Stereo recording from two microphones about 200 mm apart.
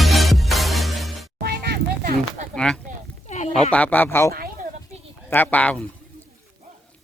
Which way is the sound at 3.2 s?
35° left (ahead or behind).